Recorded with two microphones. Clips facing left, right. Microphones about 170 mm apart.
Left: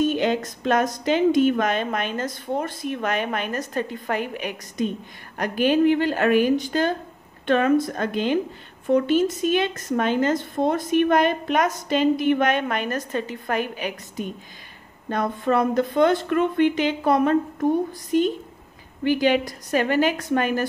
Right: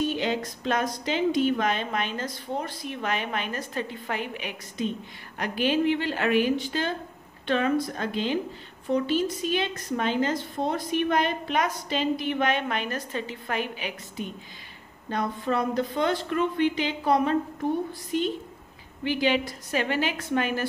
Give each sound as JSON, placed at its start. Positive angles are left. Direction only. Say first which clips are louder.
{"t": 0.0, "sound": "a woman's voice", "louder": "left 5 dB", "side_deg": 50}